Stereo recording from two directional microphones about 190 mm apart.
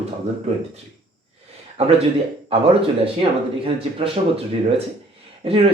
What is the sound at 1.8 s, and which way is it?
Speech, 35° right (ahead or behind).